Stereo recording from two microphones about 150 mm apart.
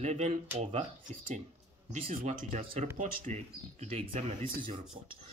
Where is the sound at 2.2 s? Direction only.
50° right (ahead or behind).